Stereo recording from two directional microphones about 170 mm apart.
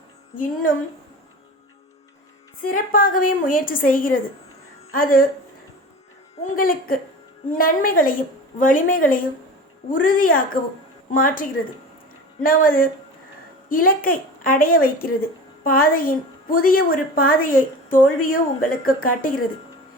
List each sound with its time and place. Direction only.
2.6 s a woman's voice: 55° left (ahead or behind)
6.4 s a woman's voice: 55° left (ahead or behind)